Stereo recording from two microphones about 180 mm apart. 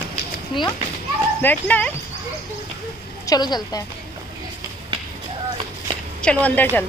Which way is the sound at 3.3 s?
25° left (ahead or behind).